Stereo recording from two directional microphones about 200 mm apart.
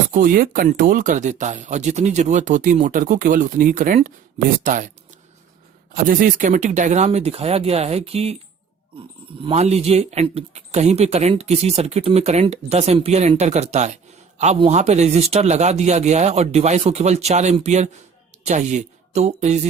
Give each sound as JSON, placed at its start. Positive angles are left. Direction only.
{"t": 0.1, "sound": "speech", "side_deg": -45}
{"t": 6.1, "sound": "speech", "side_deg": -40}
{"t": 9.4, "sound": "speech", "side_deg": -30}